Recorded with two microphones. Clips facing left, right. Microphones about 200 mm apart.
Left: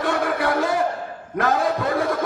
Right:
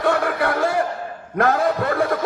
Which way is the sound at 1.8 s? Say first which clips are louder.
Right 1 dB; 60° right (ahead or behind).